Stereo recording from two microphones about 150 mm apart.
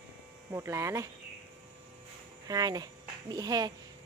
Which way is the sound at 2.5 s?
25° right (ahead or behind).